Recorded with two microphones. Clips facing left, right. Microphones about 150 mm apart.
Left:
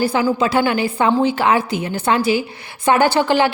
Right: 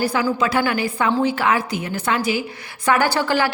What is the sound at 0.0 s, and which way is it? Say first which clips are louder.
A woman's voice: left 3 dB; 25° left (ahead or behind).